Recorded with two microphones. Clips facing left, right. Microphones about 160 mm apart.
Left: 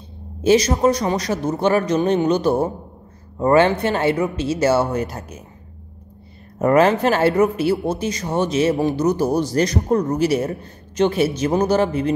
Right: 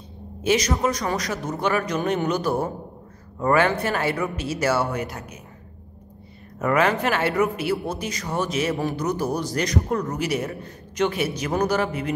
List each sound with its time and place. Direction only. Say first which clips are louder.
0.4 s speech: left 6 dB; 30° left (ahead or behind)
6.6 s speech: left 6 dB; 35° left (ahead or behind)